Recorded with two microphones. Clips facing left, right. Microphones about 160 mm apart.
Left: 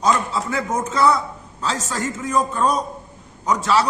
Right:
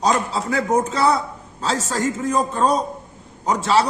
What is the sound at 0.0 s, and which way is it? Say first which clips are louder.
A man's voice: even; 35° right (ahead or behind).